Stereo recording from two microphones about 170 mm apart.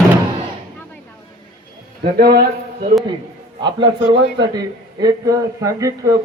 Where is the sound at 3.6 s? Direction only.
25° right (ahead or behind).